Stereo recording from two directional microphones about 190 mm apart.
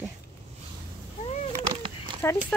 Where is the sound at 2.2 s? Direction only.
10° left (ahead or behind).